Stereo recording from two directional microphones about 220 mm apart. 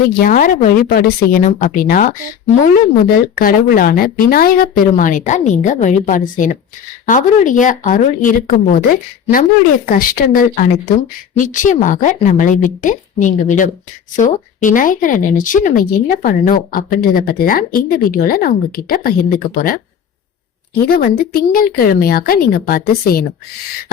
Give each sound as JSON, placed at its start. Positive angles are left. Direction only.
{"t": 0.2, "sound": "speech", "side_deg": 40}
{"t": 9.8, "sound": "speech", "side_deg": 40}
{"t": 20.8, "sound": "speech", "side_deg": 45}